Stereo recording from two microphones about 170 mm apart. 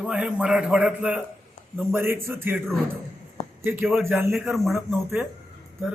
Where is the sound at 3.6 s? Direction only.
10° right (ahead or behind).